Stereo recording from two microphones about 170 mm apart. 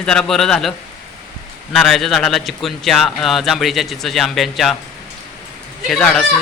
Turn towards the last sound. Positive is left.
turn(degrees=5)  # may be behind; listen again after turning